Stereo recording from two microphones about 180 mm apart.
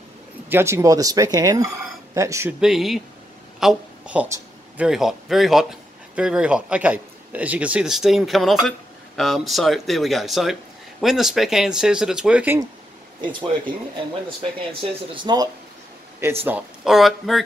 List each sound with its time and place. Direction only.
0.5 s speech: 15° right (ahead or behind)
2.6 s speech: centre (ahead or behind)
14.7 s speech: 30° right (ahead or behind)
16.2 s speech: 10° right (ahead or behind)